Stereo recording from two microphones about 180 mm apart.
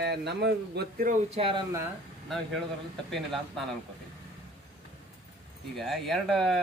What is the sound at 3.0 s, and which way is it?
Speech, centre (ahead or behind).